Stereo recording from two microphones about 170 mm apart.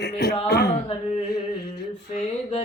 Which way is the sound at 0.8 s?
35° left (ahead or behind).